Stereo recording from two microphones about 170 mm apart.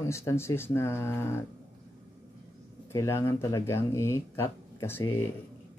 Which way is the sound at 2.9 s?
15° left (ahead or behind).